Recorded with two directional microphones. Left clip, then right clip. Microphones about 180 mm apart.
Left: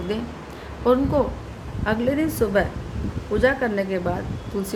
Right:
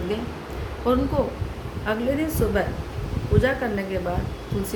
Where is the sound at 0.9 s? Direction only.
35° left (ahead or behind).